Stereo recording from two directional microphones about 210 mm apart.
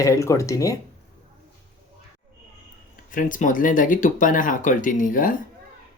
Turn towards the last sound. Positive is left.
turn(degrees=40)  # may be behind; listen again after turning